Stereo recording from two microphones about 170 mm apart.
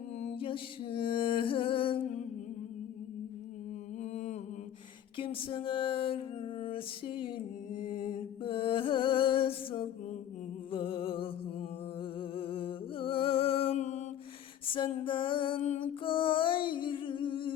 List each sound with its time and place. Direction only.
0.2 s music: 35° left (ahead or behind)
4.0 s mantra: 40° left (ahead or behind)
5.1 s a sound: 30° left (ahead or behind)
7.7 s music: 55° left (ahead or behind)
8.4 s a sound: 30° left (ahead or behind)
10.7 s music: 30° left (ahead or behind)
12.3 s music: 30° left (ahead or behind)
14.7 s a sound: 30° left (ahead or behind)
15.0 s music: 30° left (ahead or behind)